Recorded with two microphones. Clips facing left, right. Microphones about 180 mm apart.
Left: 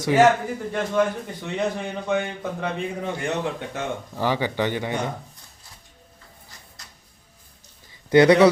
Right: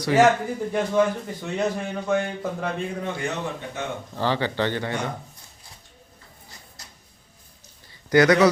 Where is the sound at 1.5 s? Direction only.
Centre (ahead or behind).